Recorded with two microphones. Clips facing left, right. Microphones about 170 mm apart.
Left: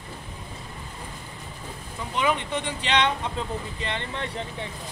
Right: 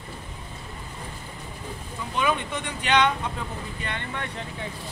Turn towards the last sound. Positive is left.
turn(degrees=25)  # may be behind; listen again after turning